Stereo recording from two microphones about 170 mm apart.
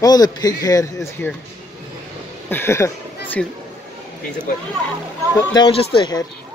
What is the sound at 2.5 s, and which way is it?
Speech, 15° left (ahead or behind).